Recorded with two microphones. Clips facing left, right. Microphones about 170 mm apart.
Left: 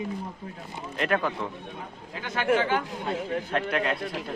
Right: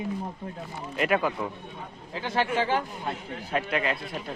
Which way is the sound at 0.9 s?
10° right (ahead or behind).